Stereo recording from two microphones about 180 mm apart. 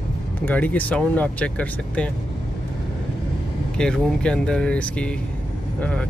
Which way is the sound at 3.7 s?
5° left (ahead or behind).